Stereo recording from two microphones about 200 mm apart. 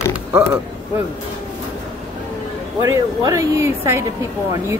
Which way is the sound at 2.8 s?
20° right (ahead or behind).